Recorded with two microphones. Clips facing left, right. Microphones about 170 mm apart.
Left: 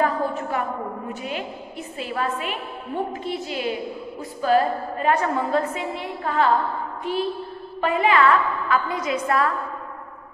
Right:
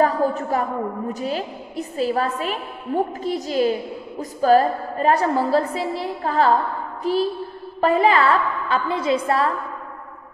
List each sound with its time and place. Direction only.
0.0 s a woman's voice: 40° right (ahead or behind)